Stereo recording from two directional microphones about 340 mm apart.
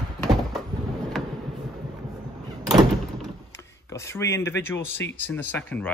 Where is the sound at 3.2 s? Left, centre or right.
Centre.